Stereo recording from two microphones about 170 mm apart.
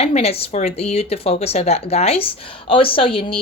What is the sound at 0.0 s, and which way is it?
Speech, 35° left (ahead or behind).